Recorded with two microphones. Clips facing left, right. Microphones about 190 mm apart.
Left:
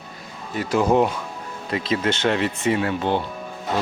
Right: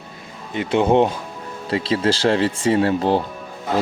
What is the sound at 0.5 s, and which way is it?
Speech, 25° right (ahead or behind).